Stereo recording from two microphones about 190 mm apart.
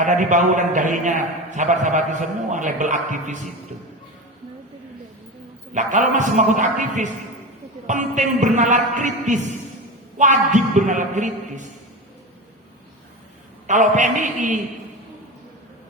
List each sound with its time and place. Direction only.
0.0 s a man's voice: 40° right (ahead or behind)
5.7 s a man's voice: 40° right (ahead or behind)
13.7 s a man's voice: 40° right (ahead or behind)